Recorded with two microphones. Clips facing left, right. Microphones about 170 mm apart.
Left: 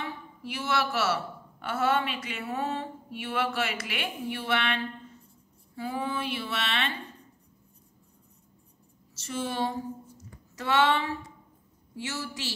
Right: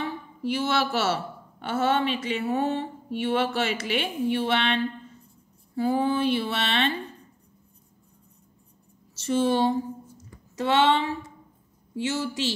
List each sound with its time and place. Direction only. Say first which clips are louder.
0.0 s speech: right 7 dB; 30° right (ahead or behind)
5.8 s a sound: right 9 dB; 30° right (ahead or behind)
9.1 s speech: right 10 dB; 30° right (ahead or behind)